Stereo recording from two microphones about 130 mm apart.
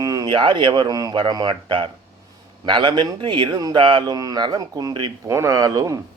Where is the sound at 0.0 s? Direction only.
25° right (ahead or behind).